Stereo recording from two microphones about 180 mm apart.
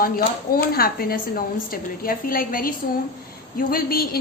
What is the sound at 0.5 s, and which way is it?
A woman's voice, 55° left (ahead or behind).